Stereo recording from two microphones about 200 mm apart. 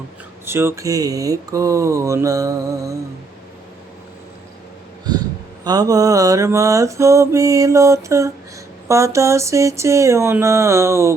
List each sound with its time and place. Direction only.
0.4 s mantra: 10° right (ahead or behind)
5.6 s mantra: 20° right (ahead or behind)